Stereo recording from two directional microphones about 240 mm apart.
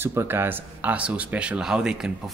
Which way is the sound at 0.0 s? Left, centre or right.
Centre.